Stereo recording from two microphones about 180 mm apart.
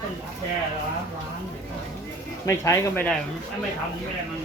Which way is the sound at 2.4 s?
15° left (ahead or behind).